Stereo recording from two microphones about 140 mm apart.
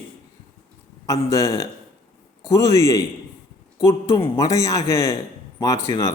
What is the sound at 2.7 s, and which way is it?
Speech, 20° left (ahead or behind).